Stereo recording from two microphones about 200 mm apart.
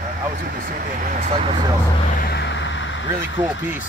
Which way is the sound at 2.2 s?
55° left (ahead or behind).